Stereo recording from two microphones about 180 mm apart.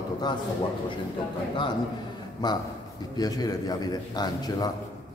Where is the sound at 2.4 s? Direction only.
25° left (ahead or behind).